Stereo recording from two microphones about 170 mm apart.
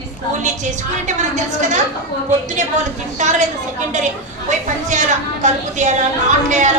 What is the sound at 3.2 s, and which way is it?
Speech, 45° right (ahead or behind).